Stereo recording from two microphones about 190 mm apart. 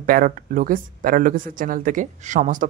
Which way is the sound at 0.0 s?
45° right (ahead or behind).